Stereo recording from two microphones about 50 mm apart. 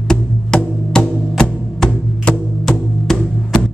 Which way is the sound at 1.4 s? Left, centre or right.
Centre.